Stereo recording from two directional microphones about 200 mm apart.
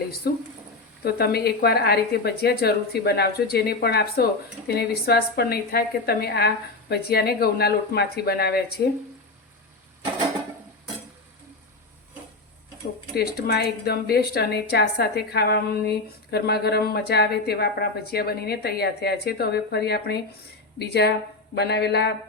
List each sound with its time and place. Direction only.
0.2 s a woman's voice: 55° left (ahead or behind)
13.1 s a woman's voice: 55° left (ahead or behind)